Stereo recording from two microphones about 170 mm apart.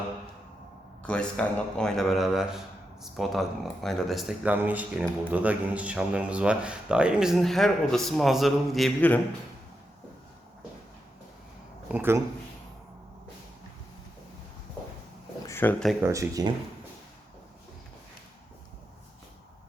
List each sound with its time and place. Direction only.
1.0 s speech: 5° left (ahead or behind)
11.9 s speech: 10° right (ahead or behind)
15.4 s a sound: 15° left (ahead or behind)
16.0 s speech: 15° right (ahead or behind)